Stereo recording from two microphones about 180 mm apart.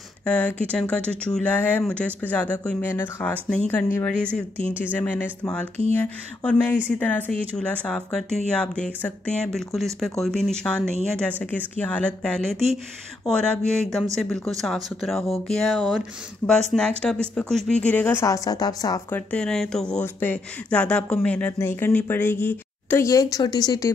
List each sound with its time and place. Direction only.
0.2 s speech: 5° left (ahead or behind)
18.2 s a woman's voice: 20° left (ahead or behind)
19.1 s speech: 5° left (ahead or behind); by 23.9 s 20° left (ahead or behind)